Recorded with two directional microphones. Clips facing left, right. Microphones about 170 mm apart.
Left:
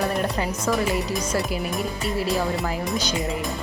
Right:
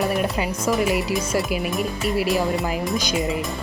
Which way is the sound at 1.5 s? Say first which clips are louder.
Right 2 dB; 15° right (ahead or behind).